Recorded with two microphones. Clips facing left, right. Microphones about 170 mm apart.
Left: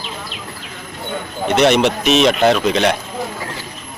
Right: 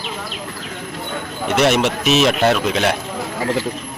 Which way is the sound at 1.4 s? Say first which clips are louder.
Left 3 dB; 5° right (ahead or behind).